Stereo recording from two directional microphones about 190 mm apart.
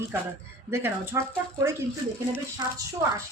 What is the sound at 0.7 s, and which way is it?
Speech, 15° right (ahead or behind).